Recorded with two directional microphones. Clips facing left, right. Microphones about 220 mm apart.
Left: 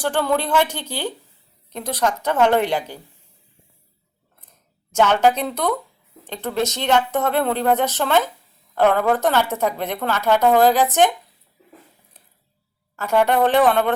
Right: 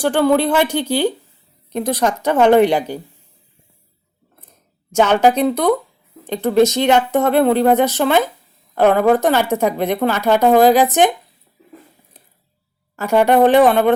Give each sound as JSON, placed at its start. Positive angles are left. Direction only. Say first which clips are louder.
{"t": 0.0, "sound": "a woman's voice", "louder": "right 7 dB", "side_deg": -10}
{"t": 4.9, "sound": "a woman's voice", "louder": "right 3 dB", "side_deg": -15}
{"t": 13.0, "sound": "a woman's voice", "louder": "right 5 dB", "side_deg": -10}